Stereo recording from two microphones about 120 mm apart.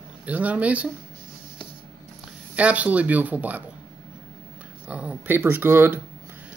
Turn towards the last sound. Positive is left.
turn(degrees=-20)  # may be behind; listen again after turning